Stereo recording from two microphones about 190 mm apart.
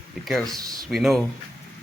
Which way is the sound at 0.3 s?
Centre (ahead or behind).